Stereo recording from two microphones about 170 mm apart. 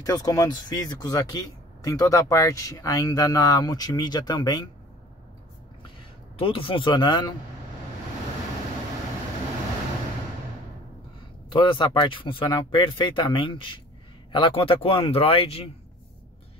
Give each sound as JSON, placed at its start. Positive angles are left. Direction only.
{"t": 0.0, "sound": "speech", "side_deg": 15}
{"t": 6.3, "sound": "speech", "side_deg": 30}
{"t": 11.5, "sound": "speech", "side_deg": 30}